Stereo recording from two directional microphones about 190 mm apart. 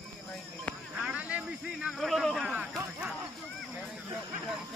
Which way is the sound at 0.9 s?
5° right (ahead or behind).